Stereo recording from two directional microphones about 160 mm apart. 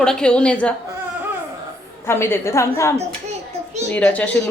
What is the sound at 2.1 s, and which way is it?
Speech, 15° left (ahead or behind).